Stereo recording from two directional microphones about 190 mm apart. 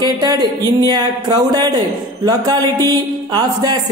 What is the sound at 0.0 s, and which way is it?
A man's voice, 20° right (ahead or behind).